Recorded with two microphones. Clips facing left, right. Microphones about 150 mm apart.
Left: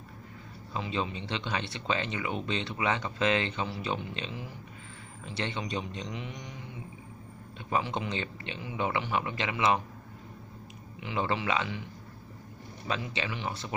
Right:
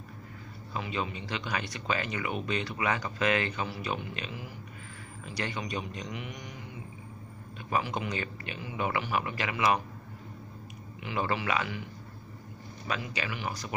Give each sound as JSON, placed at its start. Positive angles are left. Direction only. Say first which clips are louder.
{"t": 0.7, "sound": "speech", "louder": "left 1 dB", "side_deg": 25}
{"t": 7.7, "sound": "speech", "louder": "even", "side_deg": 25}
{"t": 11.0, "sound": "speech", "louder": "even", "side_deg": 25}
{"t": 12.8, "sound": "speech", "louder": "left 1 dB", "side_deg": 25}